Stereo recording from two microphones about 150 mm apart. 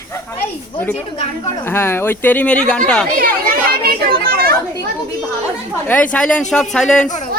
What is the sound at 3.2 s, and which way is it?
Speech, 90° right.